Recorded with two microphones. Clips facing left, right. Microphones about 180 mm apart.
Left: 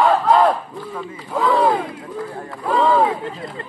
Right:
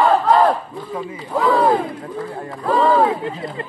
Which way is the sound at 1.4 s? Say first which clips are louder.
Right 1 dB; centre (ahead or behind).